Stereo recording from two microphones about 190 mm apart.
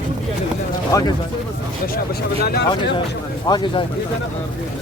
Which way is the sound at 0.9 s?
20° left (ahead or behind).